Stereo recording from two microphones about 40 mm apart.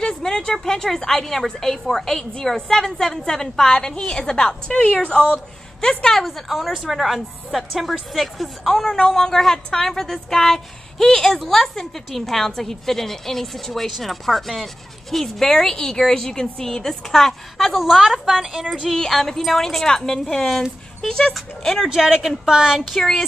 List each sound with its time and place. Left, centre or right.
0.0 s a sound: centre
0.7 s a woman's voice: centre
6.1 s a woman's voice: centre
17.9 s a woman's voice: centre
18.9 s a woman's voice: centre
21.8 s a woman's voice: centre
22.1 s a woman's voice: centre
22.5 s a woman's voice: centre